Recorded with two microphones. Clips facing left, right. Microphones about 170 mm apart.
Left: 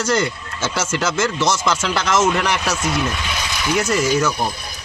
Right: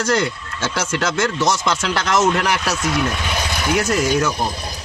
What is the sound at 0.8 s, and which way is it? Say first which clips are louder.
Speech: even; 5° left (ahead or behind).